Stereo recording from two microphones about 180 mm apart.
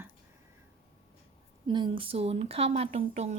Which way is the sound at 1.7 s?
25° right (ahead or behind).